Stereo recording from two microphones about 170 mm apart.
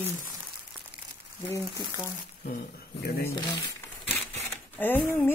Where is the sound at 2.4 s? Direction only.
60° left (ahead or behind).